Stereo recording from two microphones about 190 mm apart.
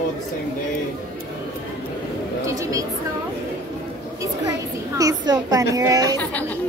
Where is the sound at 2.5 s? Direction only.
15° right (ahead or behind).